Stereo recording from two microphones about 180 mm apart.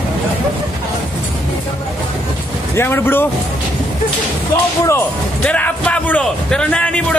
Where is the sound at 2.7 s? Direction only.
10° left (ahead or behind).